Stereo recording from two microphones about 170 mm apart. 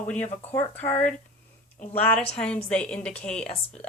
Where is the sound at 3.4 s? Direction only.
40° left (ahead or behind).